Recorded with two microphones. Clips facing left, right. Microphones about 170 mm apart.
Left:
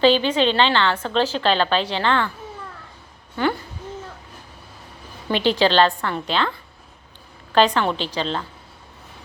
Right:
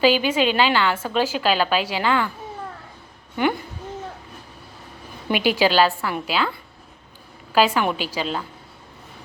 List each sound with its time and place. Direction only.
0.0 s a woman's voice: 10° right (ahead or behind)
3.4 s a woman's voice: 15° right (ahead or behind)
5.3 s a woman's voice: 10° right (ahead or behind)
7.5 s a woman's voice: 5° right (ahead or behind)